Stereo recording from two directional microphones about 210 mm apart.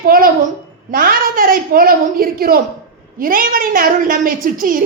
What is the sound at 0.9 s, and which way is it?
A woman's voice, 45° right (ahead or behind).